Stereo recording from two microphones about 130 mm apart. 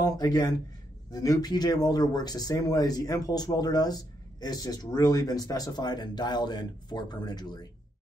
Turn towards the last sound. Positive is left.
turn(degrees=30)  # may be behind; listen again after turning